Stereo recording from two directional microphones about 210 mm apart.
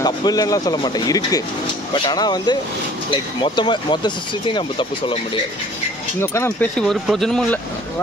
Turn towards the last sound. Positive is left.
turn(degrees=5)  # may be behind; listen again after turning